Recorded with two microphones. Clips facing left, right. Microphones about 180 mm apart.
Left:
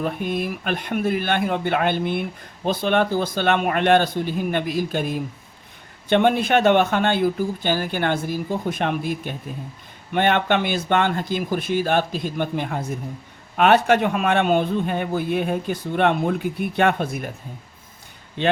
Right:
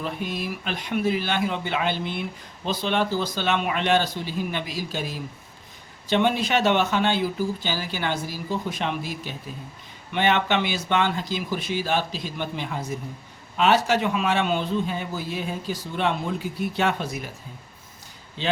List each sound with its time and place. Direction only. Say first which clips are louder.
0.0 s a man's voice: left 5 dB; 50° left (ahead or behind)
18.4 s a man's voice: left 5 dB; 60° left (ahead or behind)